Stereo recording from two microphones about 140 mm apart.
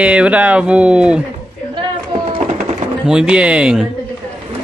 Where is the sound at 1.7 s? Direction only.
35° right (ahead or behind).